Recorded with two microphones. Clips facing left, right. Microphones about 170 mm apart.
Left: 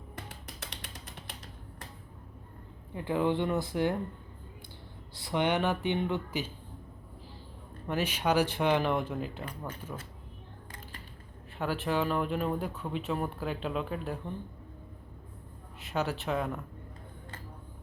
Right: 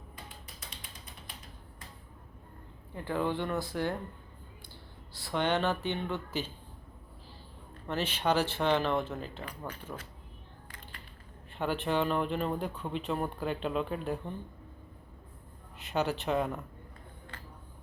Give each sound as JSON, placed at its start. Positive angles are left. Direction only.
{"t": 0.4, "sound": "a sound", "side_deg": 75}
{"t": 2.9, "sound": "speech", "side_deg": 15}
{"t": 5.1, "sound": "speech", "side_deg": 20}
{"t": 7.9, "sound": "speech", "side_deg": 10}
{"t": 11.5, "sound": "speech", "side_deg": 5}
{"t": 15.8, "sound": "speech", "side_deg": 0}